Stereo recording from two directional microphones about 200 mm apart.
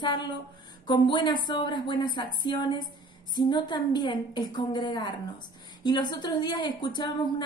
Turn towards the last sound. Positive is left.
turn(degrees=20)  # may be behind; listen again after turning